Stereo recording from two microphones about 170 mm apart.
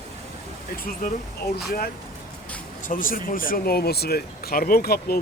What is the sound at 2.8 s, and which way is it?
Speech, 50° left (ahead or behind).